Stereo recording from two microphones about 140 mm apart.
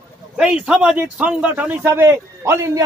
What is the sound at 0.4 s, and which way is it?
A man's voice, 5° right (ahead or behind).